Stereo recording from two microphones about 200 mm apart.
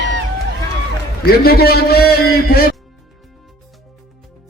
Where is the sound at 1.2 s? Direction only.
50° left (ahead or behind).